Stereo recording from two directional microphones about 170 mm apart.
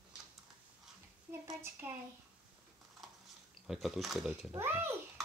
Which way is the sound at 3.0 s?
Centre (ahead or behind).